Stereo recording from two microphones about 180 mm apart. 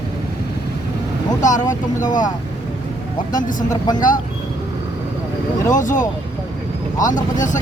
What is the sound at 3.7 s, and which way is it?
Speech, 20° left (ahead or behind).